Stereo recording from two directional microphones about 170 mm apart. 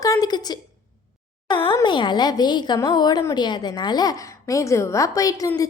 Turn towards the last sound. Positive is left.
turn(degrees=20)  # may be behind; listen again after turning